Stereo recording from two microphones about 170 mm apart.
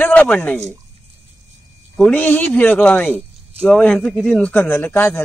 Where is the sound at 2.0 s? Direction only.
10° left (ahead or behind).